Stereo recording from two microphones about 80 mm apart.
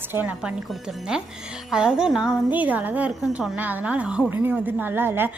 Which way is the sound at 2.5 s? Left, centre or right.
Centre.